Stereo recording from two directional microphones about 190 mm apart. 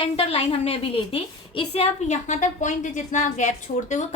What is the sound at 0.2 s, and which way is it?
A woman's voice, 30° left (ahead or behind).